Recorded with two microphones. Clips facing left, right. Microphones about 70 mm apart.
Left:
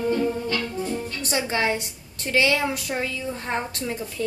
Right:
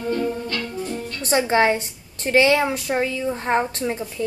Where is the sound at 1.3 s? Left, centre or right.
Right.